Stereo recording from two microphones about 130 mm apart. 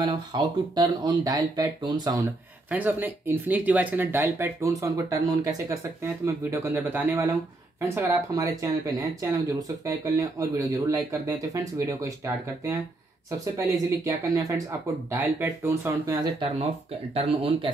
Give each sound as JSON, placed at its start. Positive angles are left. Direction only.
{"t": 0.1, "sound": "speech", "side_deg": -35}
{"t": 2.7, "sound": "speech", "side_deg": -15}
{"t": 6.7, "sound": "speech", "side_deg": -15}
{"t": 17.1, "sound": "speech", "side_deg": -50}